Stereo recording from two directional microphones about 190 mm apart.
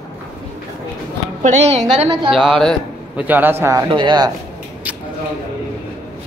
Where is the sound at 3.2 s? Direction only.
10° right (ahead or behind).